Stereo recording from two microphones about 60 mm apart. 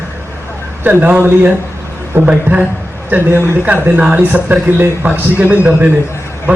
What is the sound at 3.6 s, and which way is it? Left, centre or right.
A man's voice, right.